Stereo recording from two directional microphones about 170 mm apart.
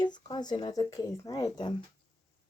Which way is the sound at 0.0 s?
25° left (ahead or behind).